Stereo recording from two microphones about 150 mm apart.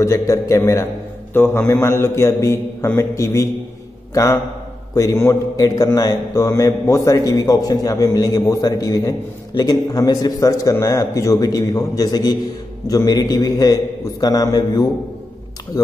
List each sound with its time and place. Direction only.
0.0 s a man's voice: 20° left (ahead or behind)